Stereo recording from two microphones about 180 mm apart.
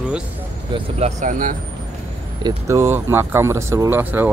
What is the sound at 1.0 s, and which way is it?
Speech, 40° right (ahead or behind).